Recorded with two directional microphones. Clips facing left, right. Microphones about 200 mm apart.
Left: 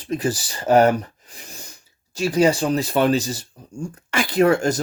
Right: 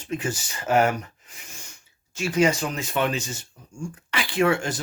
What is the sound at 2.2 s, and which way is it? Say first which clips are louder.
Speech: left 4 dB; 35° left (ahead or behind).